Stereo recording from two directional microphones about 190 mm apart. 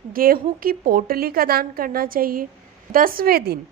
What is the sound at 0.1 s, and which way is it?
A woman's voice, 50° right (ahead or behind).